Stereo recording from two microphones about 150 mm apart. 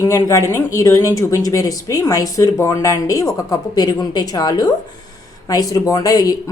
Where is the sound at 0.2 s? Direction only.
20° left (ahead or behind).